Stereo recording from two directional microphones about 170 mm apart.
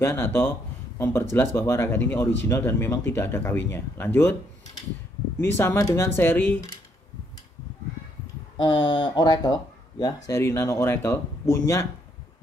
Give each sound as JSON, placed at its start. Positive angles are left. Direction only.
{"t": 0.0, "sound": "speech", "side_deg": 15}
{"t": 5.4, "sound": "speech", "side_deg": 15}
{"t": 8.5, "sound": "speech", "side_deg": 25}